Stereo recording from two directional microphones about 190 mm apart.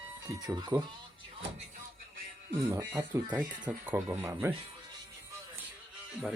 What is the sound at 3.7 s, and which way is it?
Speech, 10° right (ahead or behind).